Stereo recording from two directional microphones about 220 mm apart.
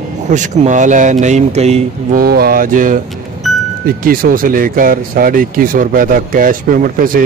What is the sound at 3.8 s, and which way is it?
Speech, 40° right (ahead or behind).